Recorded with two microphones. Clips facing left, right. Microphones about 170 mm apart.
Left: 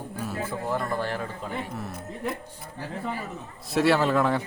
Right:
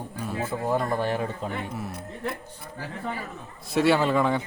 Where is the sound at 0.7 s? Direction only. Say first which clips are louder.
Right 4 dB; 20° right (ahead or behind).